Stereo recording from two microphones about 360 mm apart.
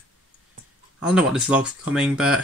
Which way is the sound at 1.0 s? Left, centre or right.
Centre.